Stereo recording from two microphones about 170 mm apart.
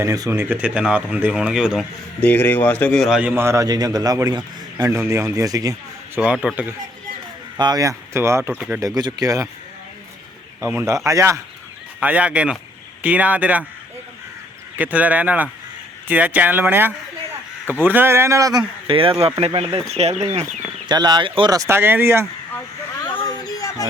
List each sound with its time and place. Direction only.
0.0 s a man's voice: 15° right (ahead or behind)
2.2 s a man's voice: 10° left (ahead or behind); by 5.7 s 20° right (ahead or behind)
6.1 s a man's voice: 5° right (ahead or behind)
7.6 s a man's voice: 20° right (ahead or behind)
9.0 s speech: 25° right (ahead or behind)
10.6 s a man's voice: 15° right (ahead or behind)
14.8 s a man's voice: 10° right (ahead or behind)
18.9 s speech: 30° right (ahead or behind)
20.8 s speech: 25° right (ahead or behind)
23.0 s a sound: 25° left (ahead or behind)